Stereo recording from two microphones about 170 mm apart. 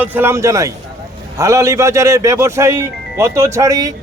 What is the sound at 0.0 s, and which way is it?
A man's voice, 10° right (ahead or behind).